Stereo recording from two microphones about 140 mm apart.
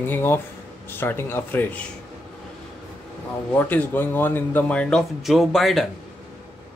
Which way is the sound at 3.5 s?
15° left (ahead or behind).